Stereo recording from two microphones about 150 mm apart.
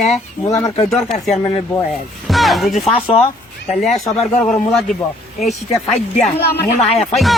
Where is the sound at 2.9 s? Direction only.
40° left (ahead or behind).